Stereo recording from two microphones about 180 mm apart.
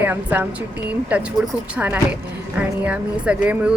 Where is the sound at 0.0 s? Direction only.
10° right (ahead or behind).